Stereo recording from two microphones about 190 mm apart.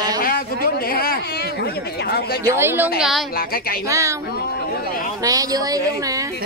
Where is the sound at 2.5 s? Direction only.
10° right (ahead or behind).